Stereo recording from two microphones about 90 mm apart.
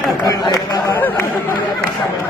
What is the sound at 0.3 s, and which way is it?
Speech, 40° left (ahead or behind).